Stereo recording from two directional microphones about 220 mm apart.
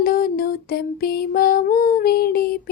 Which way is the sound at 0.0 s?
40° left (ahead or behind).